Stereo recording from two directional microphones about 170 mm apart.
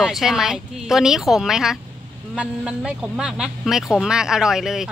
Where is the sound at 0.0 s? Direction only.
Centre (ahead or behind).